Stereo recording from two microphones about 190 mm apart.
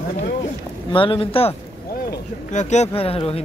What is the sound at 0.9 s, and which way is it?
Speech, 25° left (ahead or behind).